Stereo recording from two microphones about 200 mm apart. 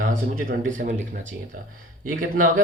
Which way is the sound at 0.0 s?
45° right (ahead or behind).